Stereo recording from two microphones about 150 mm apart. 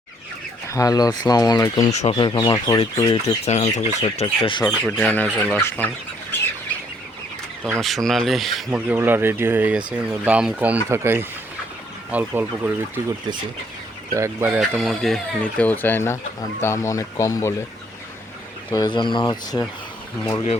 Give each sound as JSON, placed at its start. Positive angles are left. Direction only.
{"t": 0.7, "sound": "speech", "side_deg": 25}
{"t": 1.9, "sound": "speech", "side_deg": 50}
{"t": 2.1, "sound": "speech", "side_deg": 35}
{"t": 3.1, "sound": "speech", "side_deg": 45}
{"t": 4.6, "sound": "speech", "side_deg": 10}
{"t": 7.8, "sound": "speech", "side_deg": 0}
{"t": 8.7, "sound": "speech", "side_deg": -10}
{"t": 14.1, "sound": "speech", "side_deg": -20}
{"t": 18.7, "sound": "speech", "side_deg": 30}
{"t": 20.3, "sound": "speech", "side_deg": 40}